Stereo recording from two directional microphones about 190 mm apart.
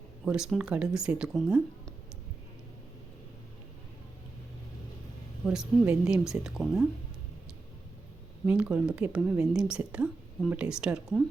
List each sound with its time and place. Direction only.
0.3 s a woman's voice: 5° right (ahead or behind)
5.5 s a woman's voice: 5° right (ahead or behind)
8.4 s a woman's voice: 5° right (ahead or behind)